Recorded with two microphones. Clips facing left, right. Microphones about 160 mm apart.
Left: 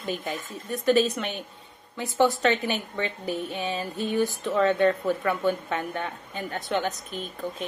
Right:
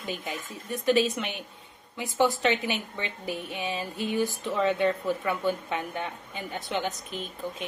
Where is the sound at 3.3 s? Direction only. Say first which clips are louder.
Even; 15° right (ahead or behind).